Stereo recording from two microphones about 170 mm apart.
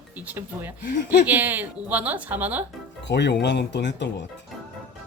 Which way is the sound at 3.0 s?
90° left.